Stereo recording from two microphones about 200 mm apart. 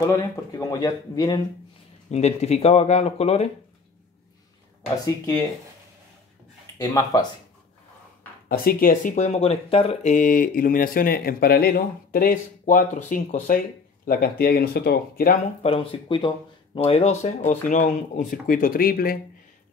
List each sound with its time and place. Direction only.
0.5 s speech: 20° left (ahead or behind)
2.0 s speech: 35° left (ahead or behind)
4.8 s speech: 20° left (ahead or behind)
6.8 s speech: 20° left (ahead or behind)
8.5 s speech: 45° left (ahead or behind)
15.6 s speech: 25° left (ahead or behind); by 19.1 s 45° left (ahead or behind)